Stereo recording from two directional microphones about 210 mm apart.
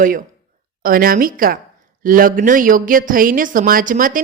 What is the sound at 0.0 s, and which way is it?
A woman's voice, 40° right (ahead or behind).